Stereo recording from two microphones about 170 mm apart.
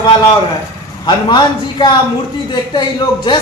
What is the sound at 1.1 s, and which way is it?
A man's voice, 25° left (ahead or behind).